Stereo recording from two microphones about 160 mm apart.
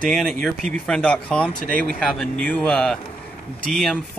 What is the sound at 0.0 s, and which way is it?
Speech, 5° left (ahead or behind).